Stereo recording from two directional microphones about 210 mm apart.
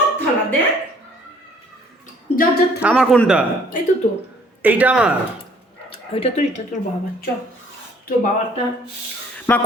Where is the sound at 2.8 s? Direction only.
5° right (ahead or behind).